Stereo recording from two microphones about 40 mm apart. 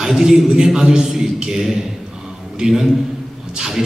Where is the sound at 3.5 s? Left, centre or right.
Centre.